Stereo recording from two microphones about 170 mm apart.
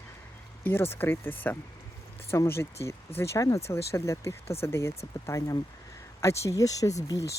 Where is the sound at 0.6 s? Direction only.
15° left (ahead or behind).